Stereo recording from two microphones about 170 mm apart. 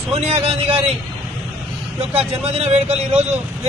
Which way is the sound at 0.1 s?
35° right (ahead or behind).